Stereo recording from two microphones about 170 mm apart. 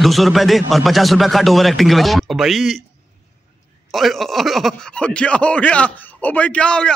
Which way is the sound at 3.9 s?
Centre (ahead or behind).